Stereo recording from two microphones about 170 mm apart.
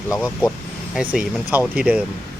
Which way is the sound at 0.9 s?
5° right (ahead or behind).